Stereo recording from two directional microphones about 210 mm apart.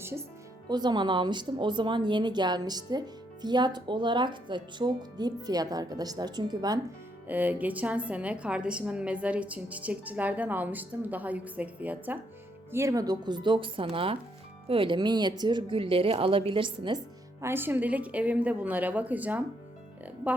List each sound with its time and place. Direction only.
0.0 s a woman's voice: 10° right (ahead or behind)
7.3 s a woman's voice: 10° right (ahead or behind)
17.4 s a woman's voice: 10° right (ahead or behind)